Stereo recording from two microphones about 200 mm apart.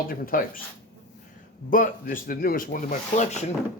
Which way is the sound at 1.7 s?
45° left (ahead or behind).